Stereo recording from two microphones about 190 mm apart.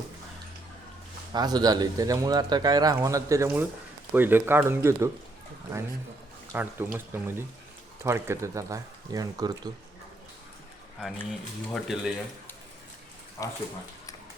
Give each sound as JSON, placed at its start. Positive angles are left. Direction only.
{"t": 1.3, "sound": "speech", "side_deg": -20}
{"t": 6.5, "sound": "speech", "side_deg": -10}
{"t": 11.3, "sound": "speech", "side_deg": 0}
{"t": 13.4, "sound": "speech", "side_deg": 15}